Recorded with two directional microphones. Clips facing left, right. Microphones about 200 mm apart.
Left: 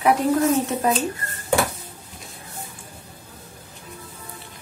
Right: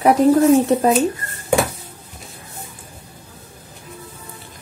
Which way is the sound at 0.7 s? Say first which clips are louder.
Right 9 dB; 35° right (ahead or behind).